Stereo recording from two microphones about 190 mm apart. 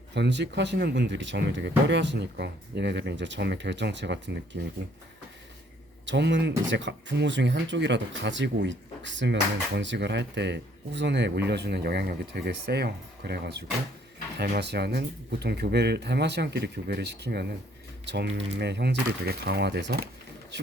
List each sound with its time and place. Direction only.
0.1 s speech: 65° right (ahead or behind)
6.1 s speech: 70° right (ahead or behind)